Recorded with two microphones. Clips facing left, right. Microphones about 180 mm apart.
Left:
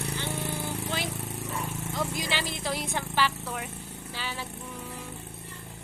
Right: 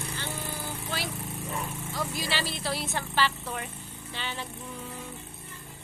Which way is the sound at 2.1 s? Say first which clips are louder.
Even; 15° left (ahead or behind).